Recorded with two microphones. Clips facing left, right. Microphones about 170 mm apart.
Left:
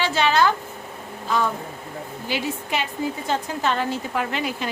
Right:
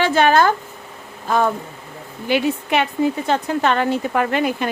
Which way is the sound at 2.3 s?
60° right (ahead or behind).